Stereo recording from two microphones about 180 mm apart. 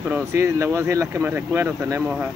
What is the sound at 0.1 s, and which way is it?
Speech, 15° right (ahead or behind).